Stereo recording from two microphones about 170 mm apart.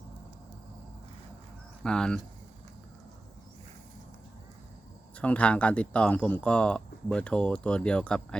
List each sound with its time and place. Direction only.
1.8 s speech: 5° left (ahead or behind)
5.1 s speech: 5° left (ahead or behind)